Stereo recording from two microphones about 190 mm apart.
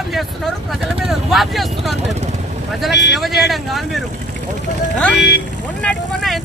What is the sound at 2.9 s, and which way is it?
Speech, 65° left (ahead or behind).